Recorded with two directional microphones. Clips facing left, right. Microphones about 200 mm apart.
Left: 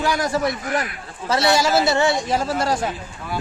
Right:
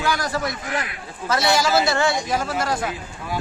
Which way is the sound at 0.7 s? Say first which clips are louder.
Left 3 dB; 45° left (ahead or behind).